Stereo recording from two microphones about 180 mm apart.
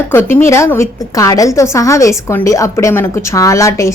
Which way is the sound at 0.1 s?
10° left (ahead or behind).